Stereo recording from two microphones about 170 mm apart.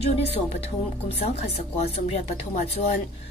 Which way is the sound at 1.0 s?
35° left (ahead or behind).